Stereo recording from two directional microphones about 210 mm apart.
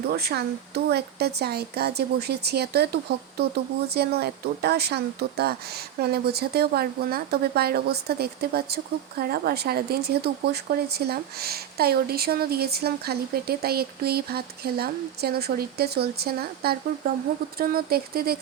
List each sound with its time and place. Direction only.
0.1 s speech: 50° right (ahead or behind)